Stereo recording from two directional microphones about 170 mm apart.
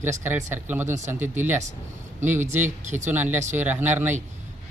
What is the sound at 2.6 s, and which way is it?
Speech, 45° right (ahead or behind).